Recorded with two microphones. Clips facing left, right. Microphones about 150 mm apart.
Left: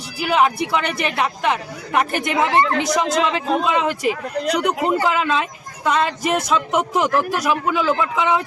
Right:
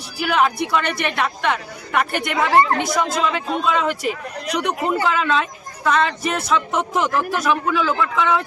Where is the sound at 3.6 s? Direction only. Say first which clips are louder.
Left 1 dB; 20° left (ahead or behind).